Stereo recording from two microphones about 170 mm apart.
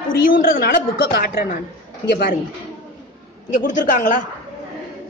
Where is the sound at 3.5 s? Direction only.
50° left (ahead or behind).